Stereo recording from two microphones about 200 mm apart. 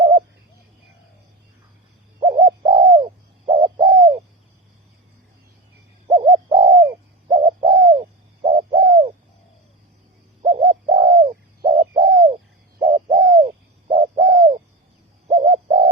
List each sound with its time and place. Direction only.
0.0 s owl: 20° right (ahead or behind)
2.3 s bird: 20° right (ahead or behind)
6.1 s bird: 20° right (ahead or behind)
10.5 s bird: 25° right (ahead or behind)